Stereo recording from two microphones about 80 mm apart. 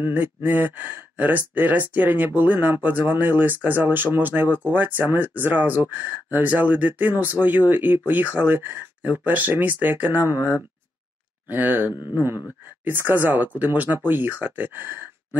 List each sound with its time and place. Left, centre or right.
0.0 s speech: right